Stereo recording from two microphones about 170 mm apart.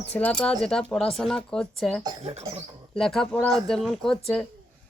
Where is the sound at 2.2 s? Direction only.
40° right (ahead or behind).